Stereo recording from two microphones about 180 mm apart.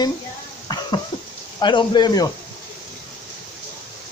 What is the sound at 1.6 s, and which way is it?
Speech, 25° left (ahead or behind).